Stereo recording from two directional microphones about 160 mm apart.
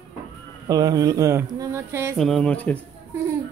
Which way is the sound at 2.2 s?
5° left (ahead or behind).